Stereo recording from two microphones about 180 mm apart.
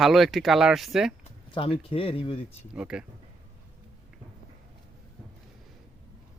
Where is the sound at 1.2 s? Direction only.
30° left (ahead or behind).